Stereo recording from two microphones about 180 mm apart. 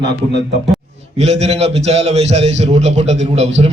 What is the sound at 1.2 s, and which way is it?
A man's voice, 35° right (ahead or behind).